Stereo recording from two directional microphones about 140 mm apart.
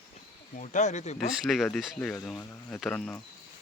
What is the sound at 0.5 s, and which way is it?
Speech, 60° left (ahead or behind).